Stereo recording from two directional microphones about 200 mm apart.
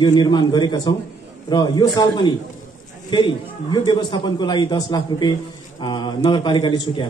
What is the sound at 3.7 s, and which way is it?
A man's voice, 20° left (ahead or behind).